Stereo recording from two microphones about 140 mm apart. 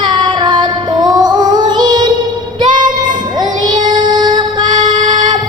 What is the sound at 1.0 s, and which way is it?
Music, 30° right (ahead or behind).